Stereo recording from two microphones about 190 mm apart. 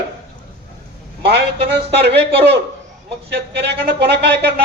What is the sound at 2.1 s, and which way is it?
Speech, 65° right (ahead or behind).